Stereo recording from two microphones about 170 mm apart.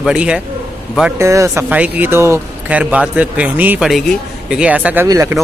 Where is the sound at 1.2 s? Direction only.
15° right (ahead or behind).